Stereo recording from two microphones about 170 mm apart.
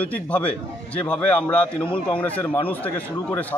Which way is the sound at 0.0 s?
10° left (ahead or behind).